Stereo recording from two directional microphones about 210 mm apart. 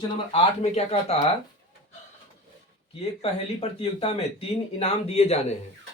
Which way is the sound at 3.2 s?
25° left (ahead or behind).